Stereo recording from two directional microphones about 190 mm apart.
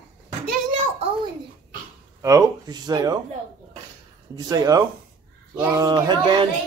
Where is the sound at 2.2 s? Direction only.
15° right (ahead or behind).